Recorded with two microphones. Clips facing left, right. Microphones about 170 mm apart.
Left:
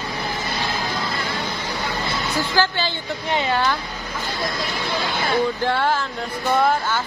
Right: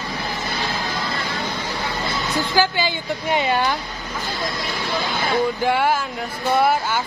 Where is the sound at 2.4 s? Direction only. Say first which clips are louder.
Right 2 dB; 10° right (ahead or behind).